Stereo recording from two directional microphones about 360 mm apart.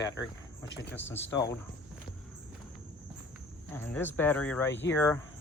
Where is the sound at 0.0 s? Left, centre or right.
Centre.